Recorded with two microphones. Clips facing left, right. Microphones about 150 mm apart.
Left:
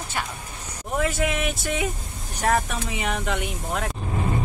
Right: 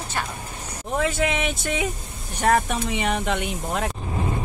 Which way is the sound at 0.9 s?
5° left (ahead or behind).